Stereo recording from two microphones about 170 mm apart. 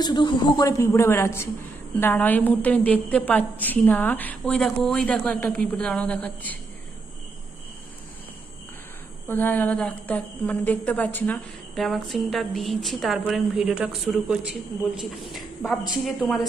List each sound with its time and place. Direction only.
0.0 s a woman's voice: 25° left (ahead or behind); by 6.6 s 10° left (ahead or behind)
9.3 s a woman's voice: 10° left (ahead or behind)